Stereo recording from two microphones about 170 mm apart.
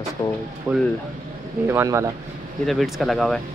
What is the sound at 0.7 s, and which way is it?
Speech, 10° right (ahead or behind).